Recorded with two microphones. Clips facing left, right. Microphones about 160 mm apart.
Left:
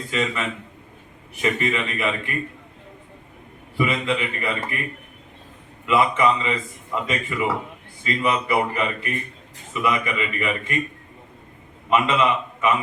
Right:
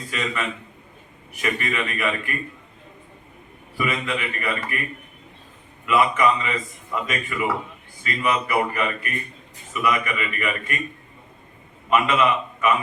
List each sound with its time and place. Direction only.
0.1 s a man's voice: 25° left (ahead or behind)
3.8 s a man's voice: 25° left (ahead or behind)
5.8 s a man's voice: 25° left (ahead or behind)
11.9 s a man's voice: 25° left (ahead or behind)